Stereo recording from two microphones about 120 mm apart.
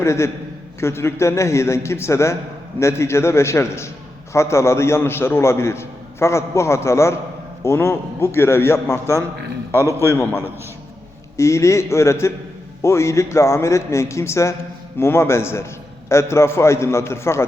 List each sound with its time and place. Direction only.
0.0 s a man's voice: 25° left (ahead or behind)
9.7 s a man's voice: 20° right (ahead or behind)
11.3 s a man's voice: 25° left (ahead or behind)